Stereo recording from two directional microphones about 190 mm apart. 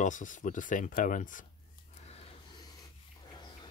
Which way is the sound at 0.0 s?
40° left (ahead or behind).